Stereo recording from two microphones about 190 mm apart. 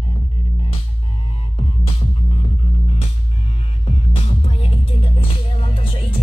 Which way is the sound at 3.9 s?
30° left (ahead or behind).